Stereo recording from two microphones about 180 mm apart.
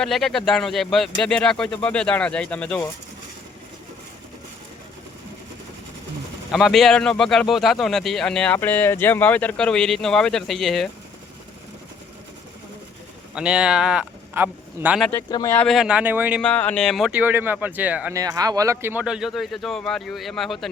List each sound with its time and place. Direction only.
0.0 s speech: centre (ahead or behind)
6.5 s speech: centre (ahead or behind)
13.3 s speech: 5° right (ahead or behind)
15.3 s speech: 20° left (ahead or behind)
15.5 s speech: centre (ahead or behind)
16.4 s speech: 5° left (ahead or behind)
18.2 s speech: 20° right (ahead or behind); by 20.7 s centre (ahead or behind)